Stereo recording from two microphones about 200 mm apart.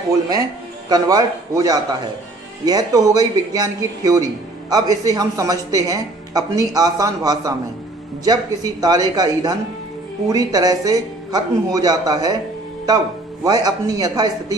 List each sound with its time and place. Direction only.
0.3 s a man's voice: 20° right (ahead or behind)